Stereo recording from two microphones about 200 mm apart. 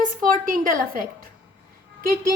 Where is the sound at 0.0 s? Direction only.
40° right (ahead or behind).